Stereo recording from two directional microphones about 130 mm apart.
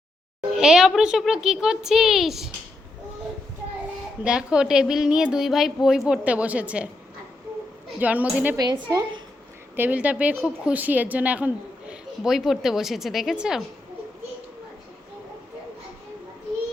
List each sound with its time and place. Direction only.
0.5 s a woman's voice: 5° right (ahead or behind)
4.2 s a woman's voice: 5° right (ahead or behind)
7.9 s a woman's voice: 10° right (ahead or behind)
8.9 s a woman's voice: 30° right (ahead or behind)
9.7 s a woman's voice: 15° right (ahead or behind)